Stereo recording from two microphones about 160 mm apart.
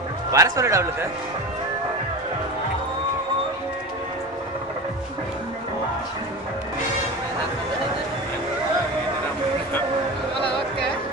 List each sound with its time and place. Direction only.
0.3 s a man's voice: 20° right (ahead or behind)